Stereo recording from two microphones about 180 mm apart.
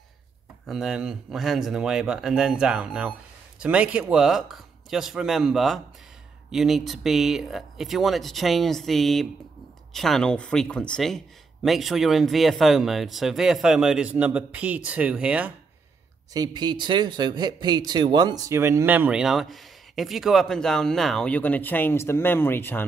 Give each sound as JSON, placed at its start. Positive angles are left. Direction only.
{"t": 0.7, "sound": "speech", "side_deg": -5}
{"t": 16.3, "sound": "speech", "side_deg": -25}